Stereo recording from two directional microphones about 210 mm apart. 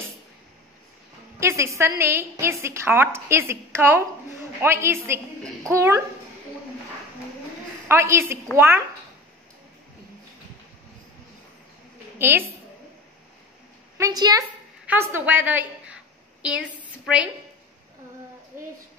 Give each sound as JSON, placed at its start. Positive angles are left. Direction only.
{"t": 1.4, "sound": "a woman's voice", "side_deg": -15}
{"t": 7.9, "sound": "a woman's voice", "side_deg": -15}
{"t": 12.2, "sound": "a woman's voice", "side_deg": -10}
{"t": 13.9, "sound": "a woman's voice", "side_deg": -15}